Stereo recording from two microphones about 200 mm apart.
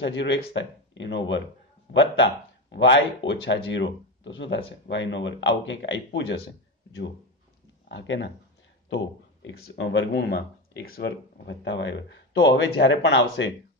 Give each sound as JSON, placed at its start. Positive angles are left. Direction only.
{"t": 0.0, "sound": "speech", "side_deg": 65}
{"t": 2.7, "sound": "speech", "side_deg": 65}
{"t": 7.9, "sound": "speech", "side_deg": 65}